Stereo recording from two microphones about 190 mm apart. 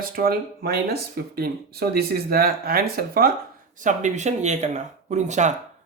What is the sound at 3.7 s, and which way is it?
Speech, 40° right (ahead or behind).